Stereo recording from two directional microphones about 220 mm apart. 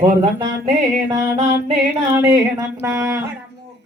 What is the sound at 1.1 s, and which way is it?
Music, 20° right (ahead or behind).